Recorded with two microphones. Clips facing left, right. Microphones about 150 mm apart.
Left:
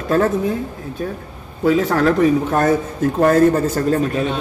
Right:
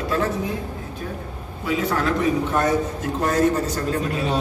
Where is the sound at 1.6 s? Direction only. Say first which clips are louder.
Left 8 dB; 40° left (ahead or behind).